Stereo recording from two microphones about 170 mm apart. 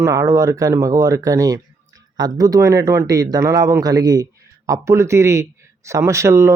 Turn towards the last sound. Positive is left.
turn(degrees=-15)  # may be behind; listen again after turning